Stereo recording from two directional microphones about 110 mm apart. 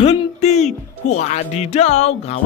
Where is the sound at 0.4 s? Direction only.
90° left.